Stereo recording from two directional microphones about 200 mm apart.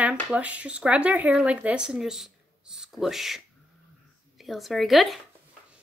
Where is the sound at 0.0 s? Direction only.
5° right (ahead or behind).